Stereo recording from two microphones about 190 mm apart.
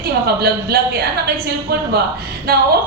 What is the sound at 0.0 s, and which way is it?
A woman's voice, 55° right (ahead or behind).